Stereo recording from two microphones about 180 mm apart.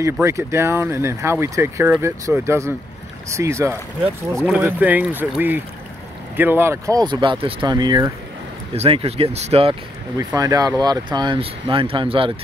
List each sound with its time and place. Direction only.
0.0 s speech: 15° right (ahead or behind)
8.7 s speech: 35° right (ahead or behind)
10.1 s speech: 20° right (ahead or behind)